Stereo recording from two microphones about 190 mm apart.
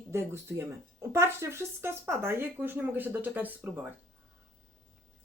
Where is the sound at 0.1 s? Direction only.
15° right (ahead or behind).